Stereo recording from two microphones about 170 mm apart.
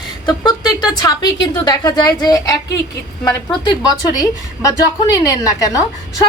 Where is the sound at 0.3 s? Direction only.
25° left (ahead or behind).